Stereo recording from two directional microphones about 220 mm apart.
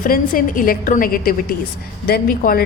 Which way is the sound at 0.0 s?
40° left (ahead or behind).